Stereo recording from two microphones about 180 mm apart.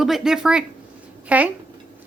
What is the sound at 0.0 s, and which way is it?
A woman's voice, centre (ahead or behind).